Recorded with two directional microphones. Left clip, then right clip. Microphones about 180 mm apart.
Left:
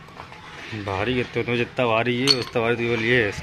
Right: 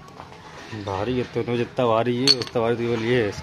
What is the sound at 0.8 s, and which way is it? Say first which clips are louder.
Speech: left 1 dB; centre (ahead or behind).